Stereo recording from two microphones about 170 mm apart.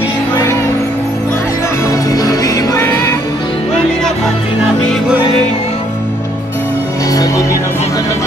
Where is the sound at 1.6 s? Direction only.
15° left (ahead or behind).